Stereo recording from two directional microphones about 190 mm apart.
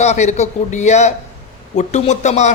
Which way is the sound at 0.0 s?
35° left (ahead or behind).